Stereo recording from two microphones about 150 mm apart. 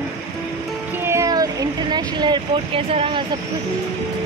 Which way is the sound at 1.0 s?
20° right (ahead or behind).